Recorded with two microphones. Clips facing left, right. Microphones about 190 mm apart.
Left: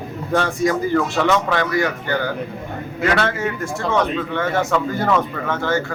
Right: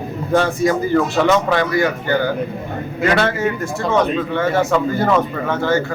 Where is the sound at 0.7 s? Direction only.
20° right (ahead or behind).